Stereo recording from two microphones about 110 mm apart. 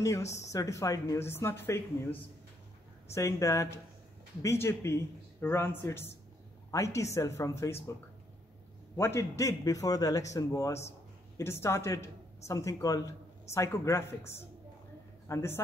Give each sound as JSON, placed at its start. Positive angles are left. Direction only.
{"t": 0.0, "sound": "speech", "side_deg": 25}
{"t": 8.9, "sound": "speech", "side_deg": 25}